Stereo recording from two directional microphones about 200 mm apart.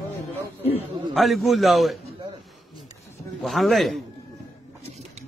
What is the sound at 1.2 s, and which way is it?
Speech, centre (ahead or behind).